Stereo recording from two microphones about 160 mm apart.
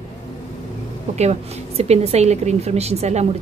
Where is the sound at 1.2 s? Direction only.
40° right (ahead or behind).